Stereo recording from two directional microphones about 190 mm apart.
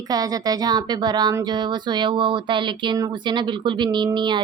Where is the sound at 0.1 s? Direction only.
20° right (ahead or behind).